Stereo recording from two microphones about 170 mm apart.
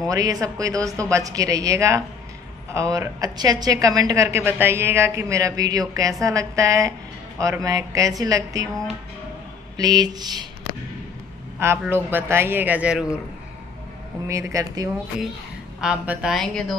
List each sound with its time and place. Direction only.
0.1 s a woman's voice: 20° right (ahead or behind)
9.8 s a woman's voice: 25° right (ahead or behind)
11.8 s speech: 10° right (ahead or behind)
14.2 s a woman's voice: 15° right (ahead or behind)
15.8 s a woman's voice: 5° right (ahead or behind)